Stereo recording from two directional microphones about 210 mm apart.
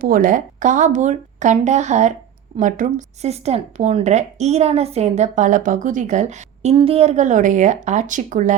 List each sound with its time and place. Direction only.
0.0 s speech: 40° right (ahead or behind)